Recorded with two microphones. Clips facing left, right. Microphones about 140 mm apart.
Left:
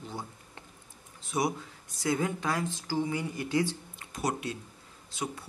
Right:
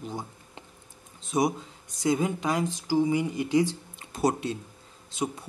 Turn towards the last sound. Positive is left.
turn(degrees=-20)  # may be behind; listen again after turning